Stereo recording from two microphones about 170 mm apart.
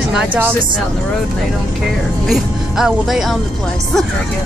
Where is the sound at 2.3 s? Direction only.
Centre (ahead or behind).